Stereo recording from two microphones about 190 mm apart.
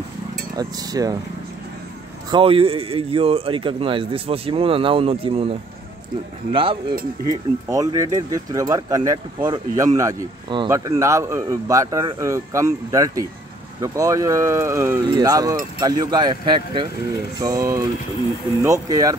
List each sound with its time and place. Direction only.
0.6 s speech: 20° right (ahead or behind)
2.3 s speech: 30° right (ahead or behind)